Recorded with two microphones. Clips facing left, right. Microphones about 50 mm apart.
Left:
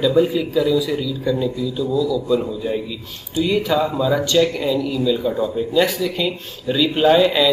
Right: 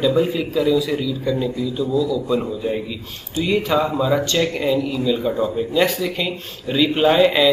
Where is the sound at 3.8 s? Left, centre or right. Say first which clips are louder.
Even; right.